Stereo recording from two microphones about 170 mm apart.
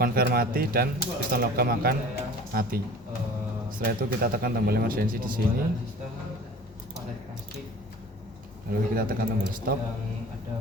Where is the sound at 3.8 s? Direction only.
60° right (ahead or behind).